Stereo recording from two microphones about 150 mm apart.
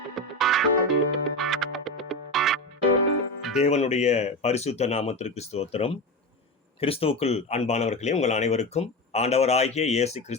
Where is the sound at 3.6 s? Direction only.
45° left (ahead or behind).